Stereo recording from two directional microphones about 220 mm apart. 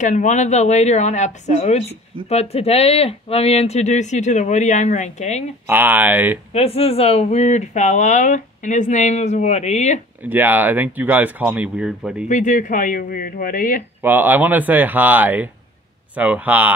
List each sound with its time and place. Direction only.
0.0 s speech: 35° left (ahead or behind)
5.7 s speech: 10° right (ahead or behind)
6.5 s speech: 25° left (ahead or behind)
10.2 s speech: 10° right (ahead or behind)
12.3 s speech: 35° left (ahead or behind)
14.0 s speech: 10° right (ahead or behind)